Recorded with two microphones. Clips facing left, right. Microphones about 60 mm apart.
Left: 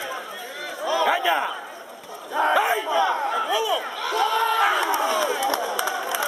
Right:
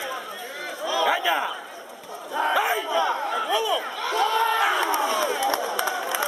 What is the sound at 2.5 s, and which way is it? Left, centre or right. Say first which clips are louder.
Battle cry: left 2 dB; centre.